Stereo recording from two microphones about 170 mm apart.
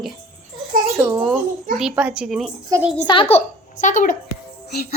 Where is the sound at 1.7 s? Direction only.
5° right (ahead or behind).